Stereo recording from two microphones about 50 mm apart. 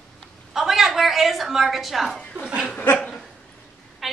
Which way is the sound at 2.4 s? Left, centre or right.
Centre.